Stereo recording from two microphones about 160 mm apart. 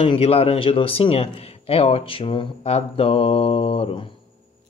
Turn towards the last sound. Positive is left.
turn(degrees=35)  # may be behind; listen again after turning